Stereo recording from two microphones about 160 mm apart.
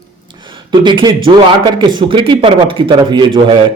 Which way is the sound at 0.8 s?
30° right (ahead or behind).